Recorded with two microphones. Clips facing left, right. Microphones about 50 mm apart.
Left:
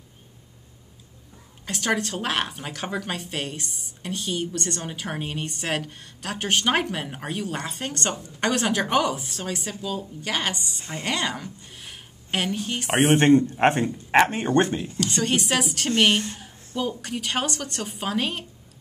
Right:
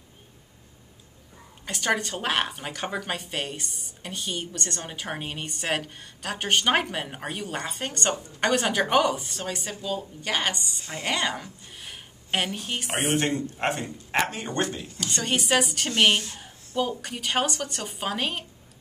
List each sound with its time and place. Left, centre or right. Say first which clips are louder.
1.7 s speech: left 1 dB; centre
10.8 s speech: left 1 dB; left
11.1 s speech: even; centre
13.1 s a man's voice: left 10 dB; left
15.0 s speech: left 3 dB; centre
16.3 s a sound: right 2 dB; centre
17.0 s speech: even; centre